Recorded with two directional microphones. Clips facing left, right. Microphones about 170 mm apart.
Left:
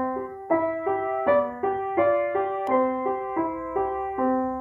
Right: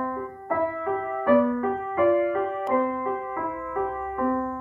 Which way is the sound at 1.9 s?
20° left (ahead or behind).